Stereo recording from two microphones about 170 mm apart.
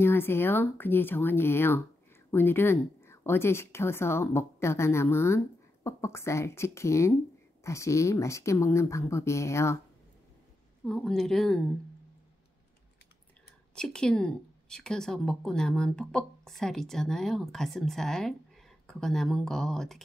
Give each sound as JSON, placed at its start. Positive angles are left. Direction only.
{"t": 0.0, "sound": "speech", "side_deg": 15}
{"t": 10.9, "sound": "speech", "side_deg": 5}
{"t": 13.7, "sound": "speech", "side_deg": 5}